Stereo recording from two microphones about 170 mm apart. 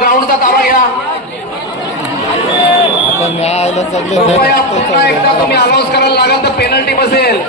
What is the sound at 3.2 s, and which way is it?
Speech, 40° left (ahead or behind).